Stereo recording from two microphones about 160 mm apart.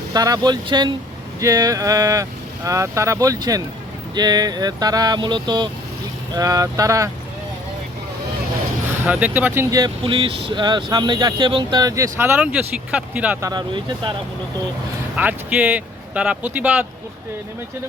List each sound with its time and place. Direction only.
0.1 s speech: 25° right (ahead or behind)
9.0 s speech: 10° right (ahead or behind)
10.0 s speech: 35° right (ahead or behind); by 13.4 s 10° right (ahead or behind)
13.4 s speech: 25° right (ahead or behind)
15.1 s speech: 10° right (ahead or behind)